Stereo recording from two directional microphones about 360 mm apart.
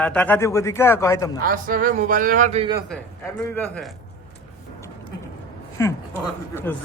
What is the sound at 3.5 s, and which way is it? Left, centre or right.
Speech, centre.